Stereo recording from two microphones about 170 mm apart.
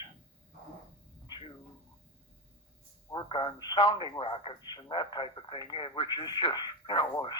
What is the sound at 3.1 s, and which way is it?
Speech, 30° left (ahead or behind).